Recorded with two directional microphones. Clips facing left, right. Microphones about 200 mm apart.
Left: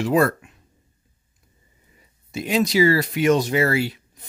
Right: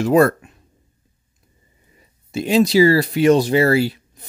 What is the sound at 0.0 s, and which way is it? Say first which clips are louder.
Speech: right 5 dB; 45° right (ahead or behind).